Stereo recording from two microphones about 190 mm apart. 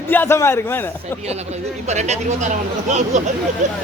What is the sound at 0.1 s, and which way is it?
A man's voice, 10° left (ahead or behind).